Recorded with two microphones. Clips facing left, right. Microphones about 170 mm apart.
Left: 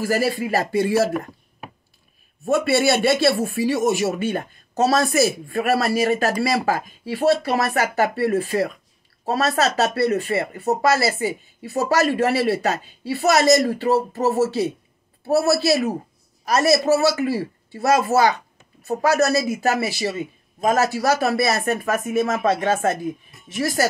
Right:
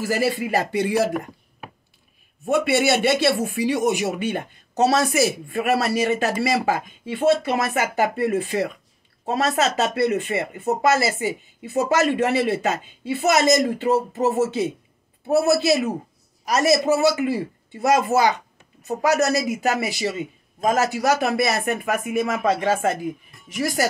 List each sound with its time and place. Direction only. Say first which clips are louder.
0.4 s speech: left 1 dB; 20° right (ahead or behind)
2.4 s speech: left 1 dB; 20° right (ahead or behind)